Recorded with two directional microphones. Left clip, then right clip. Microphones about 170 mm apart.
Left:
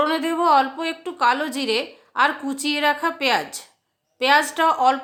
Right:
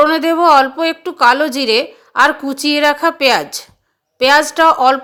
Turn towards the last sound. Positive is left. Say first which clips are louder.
# right 8 dB
turn(degrees=-35)  # may be behind; listen again after turning